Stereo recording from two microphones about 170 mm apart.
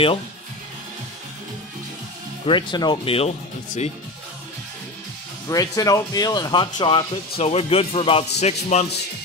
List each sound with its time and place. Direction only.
2.4 s speech: 30° left (ahead or behind)
5.5 s speech: 20° left (ahead or behind); by 8.8 s 40° left (ahead or behind)